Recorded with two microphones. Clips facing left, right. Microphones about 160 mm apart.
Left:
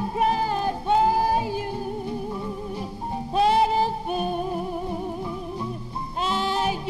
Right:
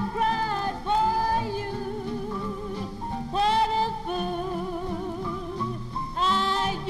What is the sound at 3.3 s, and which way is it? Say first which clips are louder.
Music: left 4 dB; 10° left (ahead or behind).